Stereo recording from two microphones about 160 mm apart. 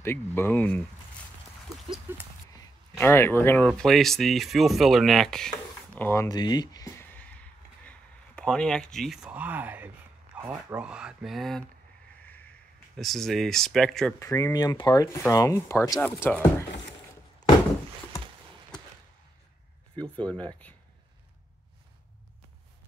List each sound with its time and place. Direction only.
0.0 s speech: 15° left (ahead or behind)
2.1 s speech: 15° right (ahead or behind)
3.0 s speech: 15° left (ahead or behind)
6.2 s a sound: 25° left (ahead or behind); by 9.8 s 10° right (ahead or behind)
10.3 s speech: 10° right (ahead or behind)
12.2 s a sound: 10° left (ahead or behind)
14.2 s speech: 20° left (ahead or behind)
16.0 s speech: 10° left (ahead or behind)
20.0 s speech: 10° left (ahead or behind)